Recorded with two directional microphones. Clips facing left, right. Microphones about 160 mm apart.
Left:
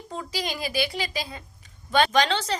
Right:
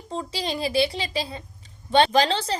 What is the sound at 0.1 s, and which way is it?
A woman's voice, 25° right (ahead or behind).